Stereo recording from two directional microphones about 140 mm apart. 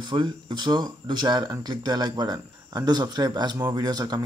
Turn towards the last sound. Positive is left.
turn(degrees=-30)  # may be behind; listen again after turning